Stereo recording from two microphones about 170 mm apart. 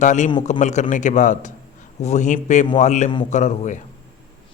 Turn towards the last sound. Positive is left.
turn(degrees=45)  # may be behind; listen again after turning